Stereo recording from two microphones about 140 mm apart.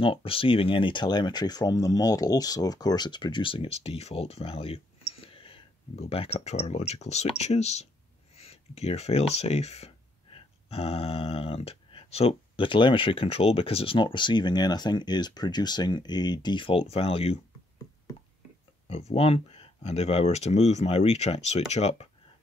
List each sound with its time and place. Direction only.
0.0 s speech: 40° left (ahead or behind)
18.9 s speech: 45° left (ahead or behind)